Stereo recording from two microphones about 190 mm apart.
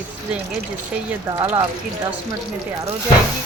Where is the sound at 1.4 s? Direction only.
15° right (ahead or behind).